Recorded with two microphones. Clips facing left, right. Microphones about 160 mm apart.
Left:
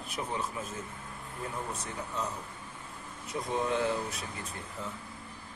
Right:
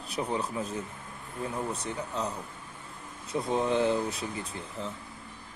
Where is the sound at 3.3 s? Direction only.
30° right (ahead or behind).